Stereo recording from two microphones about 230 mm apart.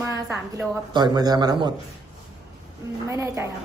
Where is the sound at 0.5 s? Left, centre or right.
Centre.